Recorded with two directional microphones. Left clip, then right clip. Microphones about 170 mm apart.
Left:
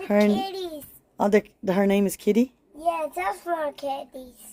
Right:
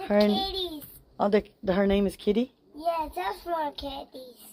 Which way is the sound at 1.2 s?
55° left (ahead or behind).